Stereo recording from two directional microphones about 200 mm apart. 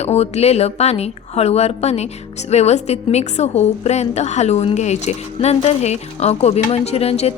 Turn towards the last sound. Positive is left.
turn(degrees=30)  # may be behind; listen again after turning